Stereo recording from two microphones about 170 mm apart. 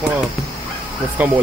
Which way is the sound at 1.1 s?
10° right (ahead or behind).